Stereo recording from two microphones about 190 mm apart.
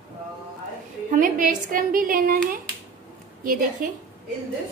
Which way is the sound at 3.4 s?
45° right (ahead or behind).